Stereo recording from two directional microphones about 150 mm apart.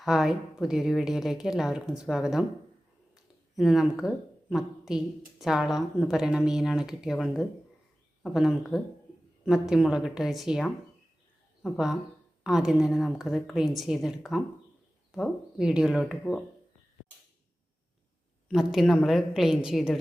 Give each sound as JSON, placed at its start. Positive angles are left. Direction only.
{"t": 0.0, "sound": "a woman's voice", "side_deg": 0}
{"t": 3.5, "sound": "a woman's voice", "side_deg": 0}
{"t": 18.4, "sound": "a woman's voice", "side_deg": -5}